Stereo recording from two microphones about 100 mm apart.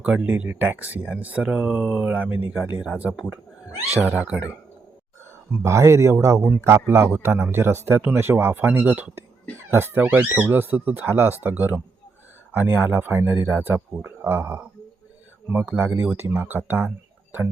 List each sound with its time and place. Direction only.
0.0 s speech: 15° right (ahead or behind)
5.6 s speech: 30° right (ahead or behind)